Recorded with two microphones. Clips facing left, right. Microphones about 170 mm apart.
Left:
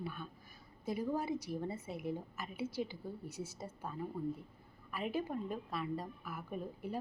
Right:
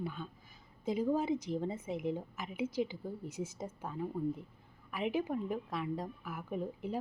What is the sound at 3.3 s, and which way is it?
Speech, 90° right.